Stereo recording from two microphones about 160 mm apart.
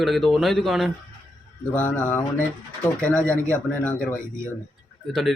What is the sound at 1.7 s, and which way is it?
Speech, 10° left (ahead or behind).